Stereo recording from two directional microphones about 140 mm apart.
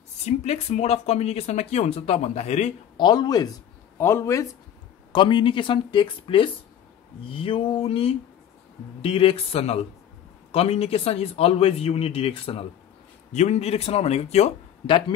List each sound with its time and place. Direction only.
0.2 s speech: 50° left (ahead or behind)
3.0 s speech: 30° left (ahead or behind)
5.1 s speech: 35° left (ahead or behind)
13.3 s speech: 55° left (ahead or behind)